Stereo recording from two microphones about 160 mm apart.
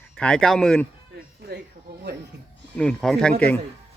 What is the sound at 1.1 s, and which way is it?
Music, 75° right (ahead or behind).